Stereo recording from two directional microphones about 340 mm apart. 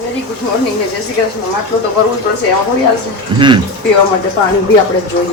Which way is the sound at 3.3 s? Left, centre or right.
Centre.